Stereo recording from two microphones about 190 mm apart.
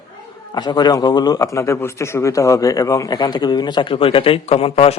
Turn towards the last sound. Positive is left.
turn(degrees=30)  # may be behind; listen again after turning